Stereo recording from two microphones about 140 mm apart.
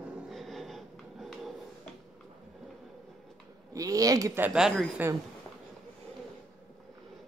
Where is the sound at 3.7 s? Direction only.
25° right (ahead or behind).